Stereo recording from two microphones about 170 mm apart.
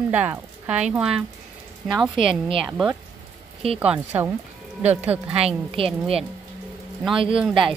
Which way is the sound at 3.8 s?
10° right (ahead or behind).